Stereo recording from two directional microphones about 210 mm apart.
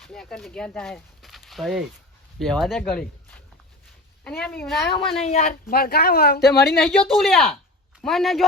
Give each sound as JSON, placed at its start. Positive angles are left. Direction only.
{"t": 0.0, "sound": "a woman's voice", "side_deg": 0}
{"t": 5.2, "sound": "speech", "side_deg": 35}
{"t": 6.7, "sound": "a woman's voice", "side_deg": 5}